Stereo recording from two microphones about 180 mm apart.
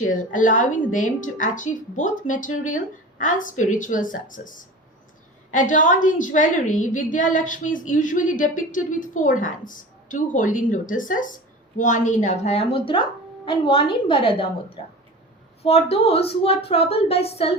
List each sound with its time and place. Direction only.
0.1 s a woman's voice: 45° left (ahead or behind); by 14.4 s 30° left (ahead or behind)
15.6 s speech: 35° left (ahead or behind)